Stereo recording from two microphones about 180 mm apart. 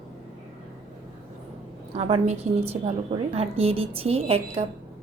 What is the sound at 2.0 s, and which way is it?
A woman's voice, 35° right (ahead or behind).